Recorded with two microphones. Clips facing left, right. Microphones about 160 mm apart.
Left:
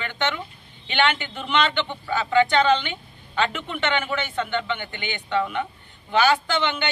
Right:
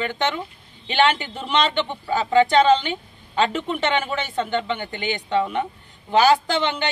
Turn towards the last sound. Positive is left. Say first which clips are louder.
# right 2 dB
turn(degrees=-35)  # may be behind; listen again after turning